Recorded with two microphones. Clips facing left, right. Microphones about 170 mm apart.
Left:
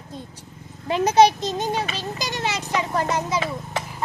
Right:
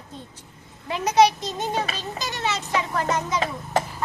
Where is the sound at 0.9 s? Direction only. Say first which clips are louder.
Left 2 dB; 30° left (ahead or behind).